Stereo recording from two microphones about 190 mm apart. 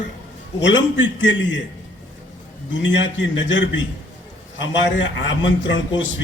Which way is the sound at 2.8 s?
75° left (ahead or behind).